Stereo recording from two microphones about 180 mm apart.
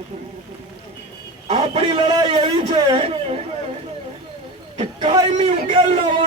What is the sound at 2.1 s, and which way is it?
Speech, 30° right (ahead or behind).